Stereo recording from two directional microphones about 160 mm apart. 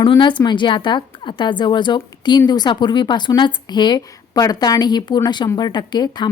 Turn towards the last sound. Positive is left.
turn(degrees=25)  # may be behind; listen again after turning